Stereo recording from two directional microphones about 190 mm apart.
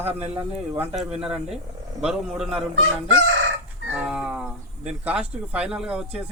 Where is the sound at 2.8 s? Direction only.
90° right.